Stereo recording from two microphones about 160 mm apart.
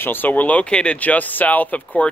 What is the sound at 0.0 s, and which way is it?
Speech, 10° left (ahead or behind).